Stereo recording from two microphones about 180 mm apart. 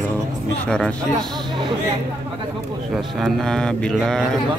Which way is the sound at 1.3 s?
25° right (ahead or behind).